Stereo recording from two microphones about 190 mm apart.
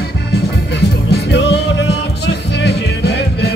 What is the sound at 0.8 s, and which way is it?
Music, 65° left (ahead or behind).